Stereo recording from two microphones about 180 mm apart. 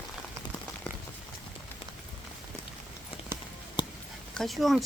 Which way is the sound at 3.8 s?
25° left (ahead or behind).